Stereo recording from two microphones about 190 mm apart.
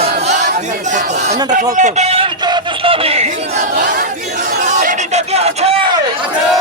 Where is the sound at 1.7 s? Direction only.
40° right (ahead or behind).